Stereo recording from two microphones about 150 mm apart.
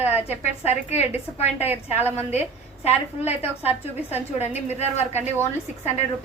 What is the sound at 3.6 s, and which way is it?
Speech, 10° right (ahead or behind).